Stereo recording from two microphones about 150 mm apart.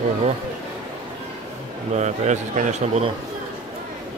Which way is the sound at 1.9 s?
50° right (ahead or behind).